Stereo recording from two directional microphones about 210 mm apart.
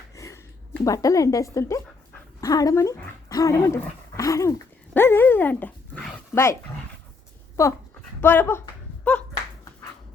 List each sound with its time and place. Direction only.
0.2 s a woman's voice: 15° left (ahead or behind)
7.6 s speech: 15° left (ahead or behind)
9.1 s a sound: 5° left (ahead or behind)